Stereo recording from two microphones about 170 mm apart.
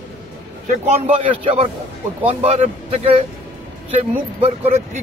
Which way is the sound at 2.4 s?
40° right (ahead or behind).